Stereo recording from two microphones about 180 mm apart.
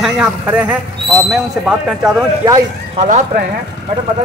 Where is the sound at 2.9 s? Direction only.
40° right (ahead or behind).